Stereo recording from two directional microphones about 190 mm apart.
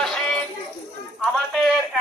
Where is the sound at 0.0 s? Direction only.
Centre (ahead or behind).